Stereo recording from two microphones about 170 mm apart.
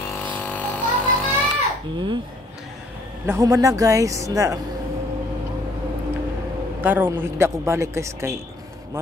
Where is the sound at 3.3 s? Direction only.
20° right (ahead or behind).